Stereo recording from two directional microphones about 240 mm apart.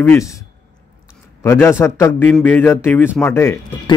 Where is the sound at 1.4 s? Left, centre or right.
Centre.